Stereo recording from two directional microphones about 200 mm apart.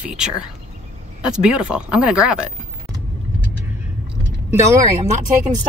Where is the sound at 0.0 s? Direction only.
5° right (ahead or behind).